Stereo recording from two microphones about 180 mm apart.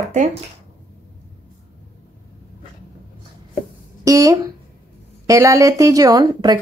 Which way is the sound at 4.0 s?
20° right (ahead or behind).